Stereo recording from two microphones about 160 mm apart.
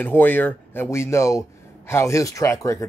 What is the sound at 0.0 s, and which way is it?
Speech, 10° left (ahead or behind).